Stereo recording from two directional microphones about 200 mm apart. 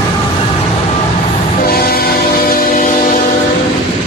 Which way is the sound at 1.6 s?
50° left (ahead or behind).